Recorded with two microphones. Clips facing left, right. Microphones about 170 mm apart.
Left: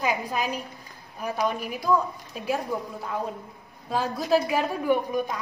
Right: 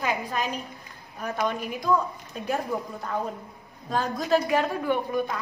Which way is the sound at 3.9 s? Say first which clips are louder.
Left 1 dB; 5° left (ahead or behind).